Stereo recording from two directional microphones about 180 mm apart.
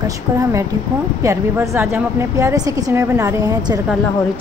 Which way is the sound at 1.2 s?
15° right (ahead or behind).